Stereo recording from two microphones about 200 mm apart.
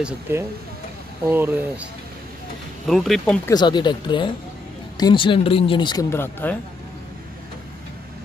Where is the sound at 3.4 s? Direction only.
20° left (ahead or behind).